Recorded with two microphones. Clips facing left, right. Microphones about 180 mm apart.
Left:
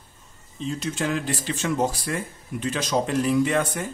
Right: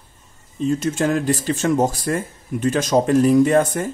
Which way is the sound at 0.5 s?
50° right (ahead or behind).